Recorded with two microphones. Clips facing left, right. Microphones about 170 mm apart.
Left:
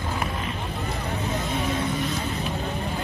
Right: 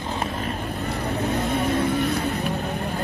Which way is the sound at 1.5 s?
55° right (ahead or behind).